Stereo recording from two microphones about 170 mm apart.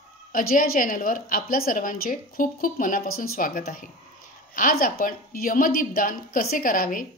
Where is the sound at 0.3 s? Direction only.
55° left (ahead or behind).